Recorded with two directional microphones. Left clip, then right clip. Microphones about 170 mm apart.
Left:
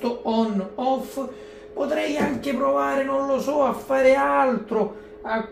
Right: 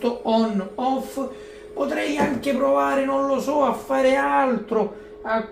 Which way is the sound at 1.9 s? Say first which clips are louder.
Right 2 dB; 5° right (ahead or behind).